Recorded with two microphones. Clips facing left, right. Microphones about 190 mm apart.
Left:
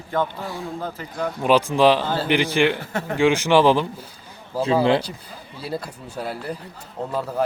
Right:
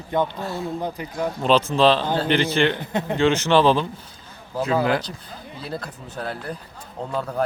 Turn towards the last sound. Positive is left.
turn(degrees=5)  # may be behind; listen again after turning